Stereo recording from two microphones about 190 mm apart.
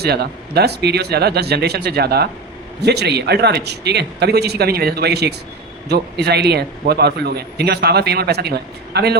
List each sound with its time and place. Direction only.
0.0 s a man's voice: 60° right (ahead or behind)